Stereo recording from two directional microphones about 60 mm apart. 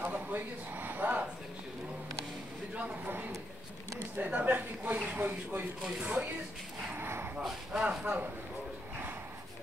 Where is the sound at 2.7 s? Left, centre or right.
Right.